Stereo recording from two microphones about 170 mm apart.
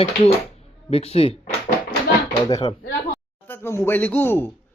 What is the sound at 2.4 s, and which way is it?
Speech, 25° left (ahead or behind).